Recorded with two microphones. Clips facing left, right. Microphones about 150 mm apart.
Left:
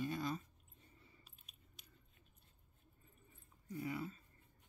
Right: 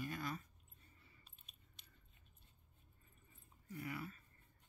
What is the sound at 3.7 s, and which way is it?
Speech, 20° left (ahead or behind).